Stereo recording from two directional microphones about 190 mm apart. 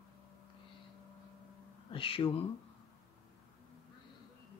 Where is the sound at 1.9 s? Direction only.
30° left (ahead or behind).